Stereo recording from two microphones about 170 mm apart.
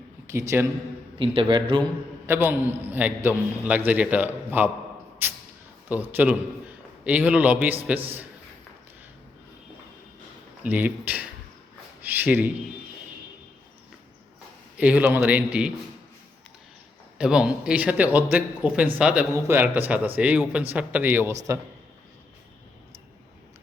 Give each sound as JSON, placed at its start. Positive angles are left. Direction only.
{"t": 0.3, "sound": "a man's voice", "side_deg": -15}
{"t": 1.2, "sound": "a man's voice", "side_deg": -30}
{"t": 2.2, "sound": "a man's voice", "side_deg": -10}
{"t": 5.9, "sound": "a man's voice", "side_deg": -10}
{"t": 10.6, "sound": "a man's voice", "side_deg": -10}
{"t": 14.8, "sound": "a man's voice", "side_deg": -10}
{"t": 17.2, "sound": "a man's voice", "side_deg": -5}